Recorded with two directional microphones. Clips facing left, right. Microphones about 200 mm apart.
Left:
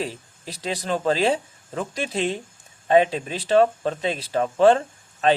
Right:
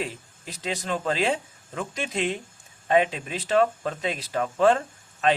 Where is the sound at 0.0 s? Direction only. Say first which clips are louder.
Left 3 dB; 35° left (ahead or behind).